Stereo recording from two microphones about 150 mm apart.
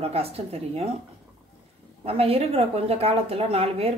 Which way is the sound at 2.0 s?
40° right (ahead or behind).